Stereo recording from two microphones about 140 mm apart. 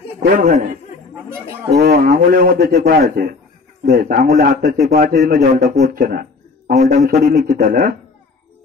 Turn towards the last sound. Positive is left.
turn(degrees=-90)